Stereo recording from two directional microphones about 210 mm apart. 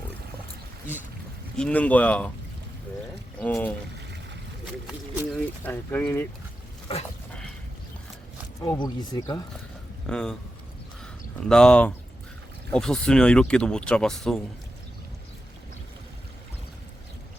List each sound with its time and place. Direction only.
1.5 s speech: 5° left (ahead or behind)
3.4 s speech: 5° left (ahead or behind)
4.6 s speech: 5° right (ahead or behind)
5.6 s speech: 10° left (ahead or behind)
8.6 s speech: 20° left (ahead or behind)
10.1 s speech: 5° left (ahead or behind)
11.0 s a sound: 5° left (ahead or behind)
12.7 s speech: 5° left (ahead or behind)